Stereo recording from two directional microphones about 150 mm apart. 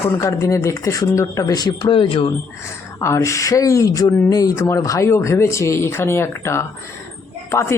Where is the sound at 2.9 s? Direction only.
20° left (ahead or behind).